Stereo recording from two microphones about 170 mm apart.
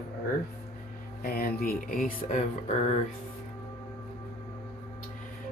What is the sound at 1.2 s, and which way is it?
Speech, 60° left (ahead or behind).